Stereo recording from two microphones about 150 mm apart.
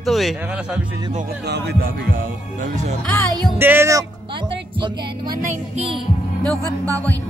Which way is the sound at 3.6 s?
15° right (ahead or behind).